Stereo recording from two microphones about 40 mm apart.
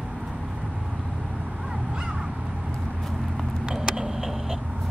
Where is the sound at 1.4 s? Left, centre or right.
Centre.